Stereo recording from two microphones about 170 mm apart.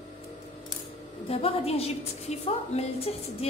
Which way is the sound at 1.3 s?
35° left (ahead or behind).